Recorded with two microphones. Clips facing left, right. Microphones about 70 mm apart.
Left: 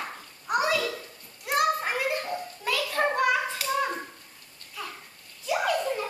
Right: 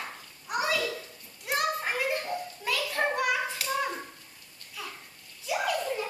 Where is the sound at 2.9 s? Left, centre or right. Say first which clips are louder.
Left 4 dB; centre.